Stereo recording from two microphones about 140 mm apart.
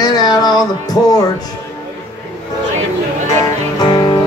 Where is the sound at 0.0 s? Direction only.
30° left (ahead or behind).